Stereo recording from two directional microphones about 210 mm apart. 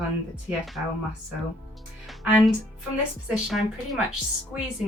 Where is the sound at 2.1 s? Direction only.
Centre (ahead or behind).